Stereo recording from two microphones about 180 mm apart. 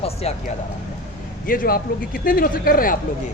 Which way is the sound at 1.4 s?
50° left (ahead or behind).